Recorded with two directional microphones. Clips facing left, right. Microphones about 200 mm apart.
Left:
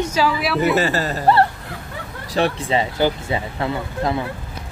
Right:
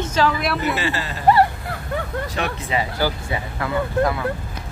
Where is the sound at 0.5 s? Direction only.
45° left (ahead or behind).